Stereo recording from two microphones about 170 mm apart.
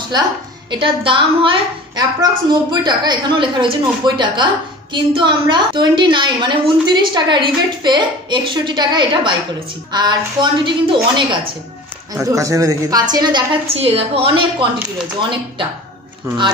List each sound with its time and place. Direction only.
0.7 s a woman's voice: 30° right (ahead or behind)
12.1 s a woman's voice: 20° right (ahead or behind)
16.3 s speech: 15° right (ahead or behind)